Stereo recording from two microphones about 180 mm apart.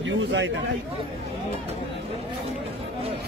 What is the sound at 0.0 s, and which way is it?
Speech, 85° right.